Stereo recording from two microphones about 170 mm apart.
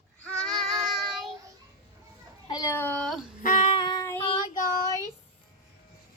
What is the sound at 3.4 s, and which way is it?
Child singing, 45° left (ahead or behind).